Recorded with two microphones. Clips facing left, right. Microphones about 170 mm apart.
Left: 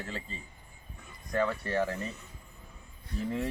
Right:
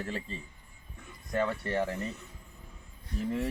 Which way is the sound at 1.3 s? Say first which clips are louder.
Left 1 dB; 20° right (ahead or behind).